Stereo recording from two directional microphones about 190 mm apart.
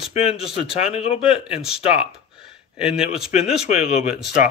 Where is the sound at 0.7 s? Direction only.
30° left (ahead or behind).